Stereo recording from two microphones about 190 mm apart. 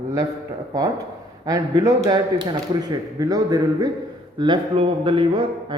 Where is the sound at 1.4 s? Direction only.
20° right (ahead or behind).